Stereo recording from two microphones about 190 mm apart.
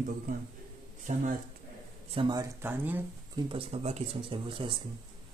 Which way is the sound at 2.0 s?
25° right (ahead or behind).